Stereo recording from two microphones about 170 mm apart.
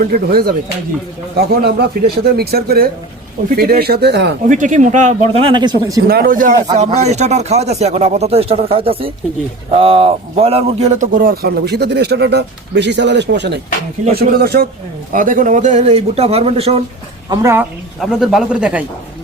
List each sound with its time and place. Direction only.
0.0 s a man's voice: 60° right (ahead or behind); by 4.4 s 90° right
4.4 s speech: 50° right (ahead or behind); by 6.0 s 25° right (ahead or behind)
6.1 s speech: 60° right (ahead or behind)
6.7 s a man's voice: 40° right (ahead or behind); by 13.6 s 90° right
14.1 s speech: 65° right (ahead or behind)
15.1 s speech: 50° right (ahead or behind); by 16.7 s 35° right (ahead or behind)
17.2 s speech: 20° right (ahead or behind)
18.0 s speech: centre (ahead or behind)